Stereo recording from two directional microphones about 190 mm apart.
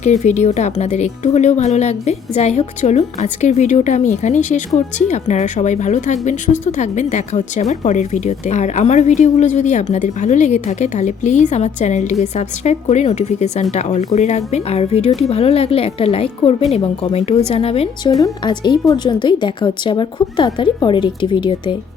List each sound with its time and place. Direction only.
0.0 s speech: 40° left (ahead or behind)
18.1 s a woman's voice: 20° left (ahead or behind)